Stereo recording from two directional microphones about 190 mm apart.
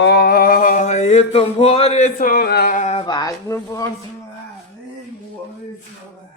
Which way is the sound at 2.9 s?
25° left (ahead or behind).